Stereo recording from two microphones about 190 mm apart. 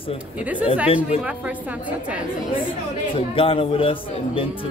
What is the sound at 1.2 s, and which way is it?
A woman's voice, 5° right (ahead or behind).